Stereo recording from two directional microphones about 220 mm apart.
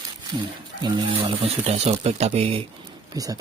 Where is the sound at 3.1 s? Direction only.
15° right (ahead or behind).